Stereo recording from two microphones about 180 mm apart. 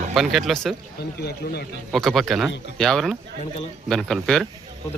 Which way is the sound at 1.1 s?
60° left (ahead or behind).